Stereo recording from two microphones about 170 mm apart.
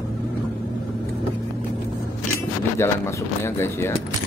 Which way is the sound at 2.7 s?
15° left (ahead or behind).